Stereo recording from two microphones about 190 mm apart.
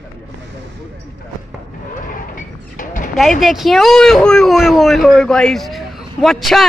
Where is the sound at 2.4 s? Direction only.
45° left (ahead or behind).